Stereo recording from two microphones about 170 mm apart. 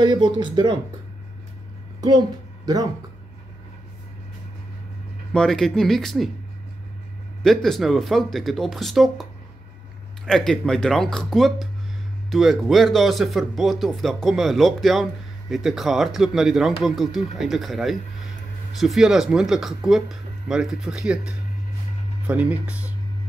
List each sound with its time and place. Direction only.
0.0 s speech: 25° right (ahead or behind)
2.0 s a woman's voice: 20° right (ahead or behind)
5.3 s speech: 5° left (ahead or behind)
7.4 s speech: centre (ahead or behind)